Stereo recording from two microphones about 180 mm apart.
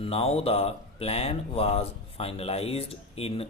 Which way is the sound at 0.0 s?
35° left (ahead or behind).